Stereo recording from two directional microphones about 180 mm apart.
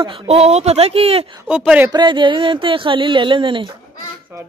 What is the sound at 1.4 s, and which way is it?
Speech, 5° right (ahead or behind).